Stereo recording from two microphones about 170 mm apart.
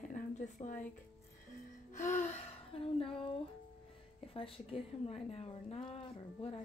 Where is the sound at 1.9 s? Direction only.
50° left (ahead or behind); by 3.3 s 30° left (ahead or behind).